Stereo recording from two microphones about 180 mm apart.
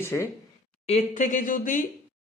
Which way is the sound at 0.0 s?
15° left (ahead or behind).